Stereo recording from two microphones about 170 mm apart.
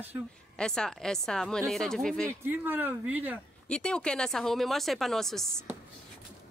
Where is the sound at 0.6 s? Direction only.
5° left (ahead or behind).